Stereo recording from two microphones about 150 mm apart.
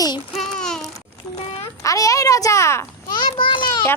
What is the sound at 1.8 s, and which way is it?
A child's voice, 20° left (ahead or behind).